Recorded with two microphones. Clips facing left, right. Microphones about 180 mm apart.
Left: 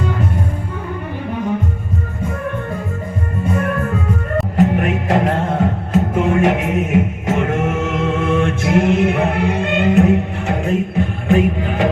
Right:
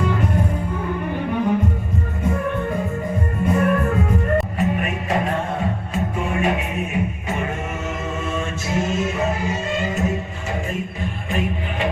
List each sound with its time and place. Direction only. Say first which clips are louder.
4.5 s music: left 7 dB; 75° left (ahead or behind)